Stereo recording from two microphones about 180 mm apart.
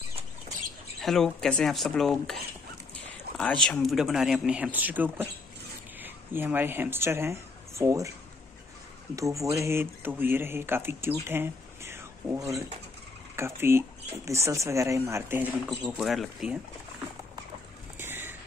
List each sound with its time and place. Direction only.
1.0 s speech: centre (ahead or behind); by 8.1 s 15° right (ahead or behind)
9.1 s speech: 15° right (ahead or behind)
13.4 s speech: 15° right (ahead or behind)
15.8 s speech: centre (ahead or behind)
17.9 s a sound: 10° right (ahead or behind)